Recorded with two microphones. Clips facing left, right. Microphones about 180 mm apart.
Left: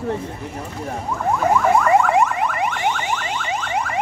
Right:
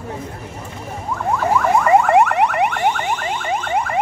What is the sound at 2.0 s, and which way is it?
Car alarm, 60° right (ahead or behind).